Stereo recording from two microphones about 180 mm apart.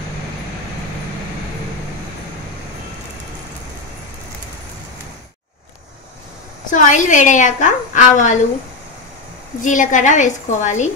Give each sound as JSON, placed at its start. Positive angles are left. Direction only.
{"t": 6.7, "sound": "a woman's voice", "side_deg": 45}
{"t": 9.6, "sound": "a woman's voice", "side_deg": 45}